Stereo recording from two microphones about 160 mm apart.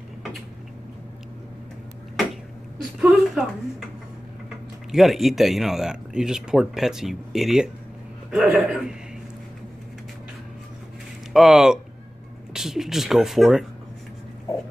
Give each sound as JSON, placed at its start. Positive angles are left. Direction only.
{"t": 3.0, "sound": "a sound", "side_deg": -5}
{"t": 4.9, "sound": "speech", "side_deg": 0}
{"t": 11.3, "sound": "speech", "side_deg": 0}